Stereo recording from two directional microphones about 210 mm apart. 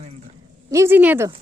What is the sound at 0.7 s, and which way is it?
Speech, 10° right (ahead or behind).